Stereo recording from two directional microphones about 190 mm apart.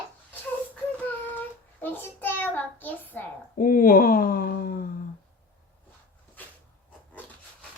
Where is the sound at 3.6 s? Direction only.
45° left (ahead or behind).